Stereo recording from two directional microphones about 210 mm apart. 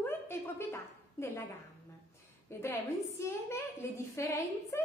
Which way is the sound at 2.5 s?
15° left (ahead or behind).